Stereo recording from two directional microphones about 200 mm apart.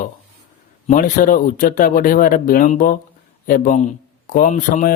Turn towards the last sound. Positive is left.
turn(degrees=40)  # may be behind; listen again after turning